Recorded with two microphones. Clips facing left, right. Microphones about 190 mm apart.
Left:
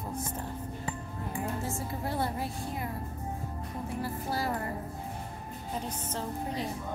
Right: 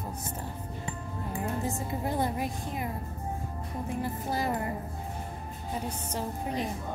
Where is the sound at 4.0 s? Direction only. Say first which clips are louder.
Right 1 dB; 20° right (ahead or behind).